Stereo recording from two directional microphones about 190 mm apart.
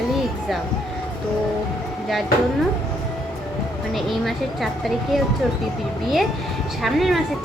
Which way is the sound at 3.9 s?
Centre (ahead or behind).